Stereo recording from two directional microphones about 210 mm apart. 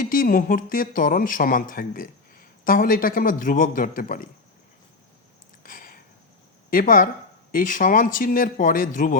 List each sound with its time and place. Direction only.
0.0 s speech: 40° left (ahead or behind)
5.6 s a sound: 40° left (ahead or behind)
6.7 s speech: 40° left (ahead or behind)